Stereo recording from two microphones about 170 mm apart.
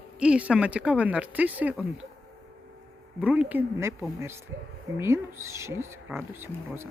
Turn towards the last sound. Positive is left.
turn(degrees=-15)  # may be behind; listen again after turning